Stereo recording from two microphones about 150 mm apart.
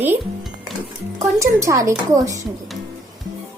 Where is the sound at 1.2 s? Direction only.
20° right (ahead or behind).